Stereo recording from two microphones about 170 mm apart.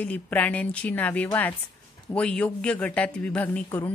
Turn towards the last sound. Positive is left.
turn(degrees=10)  # may be behind; listen again after turning